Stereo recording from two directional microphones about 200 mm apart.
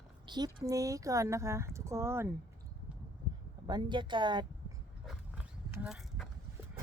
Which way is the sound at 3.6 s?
20° right (ahead or behind).